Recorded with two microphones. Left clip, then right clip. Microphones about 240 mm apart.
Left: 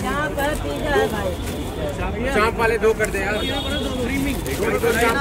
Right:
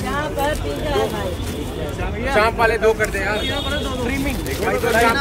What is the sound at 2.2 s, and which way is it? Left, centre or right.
Speech, centre.